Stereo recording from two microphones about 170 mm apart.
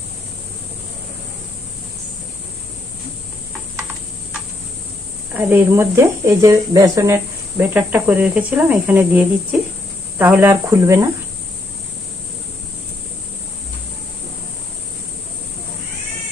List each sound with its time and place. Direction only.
5.3 s speech: 10° right (ahead or behind)